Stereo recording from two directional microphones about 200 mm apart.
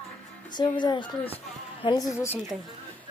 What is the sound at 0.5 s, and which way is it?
Speech, 20° left (ahead or behind).